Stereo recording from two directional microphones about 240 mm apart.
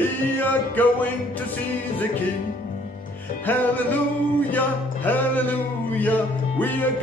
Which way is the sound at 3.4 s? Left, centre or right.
Centre.